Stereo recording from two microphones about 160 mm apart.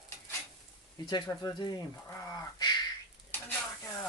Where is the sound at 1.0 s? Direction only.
30° left (ahead or behind).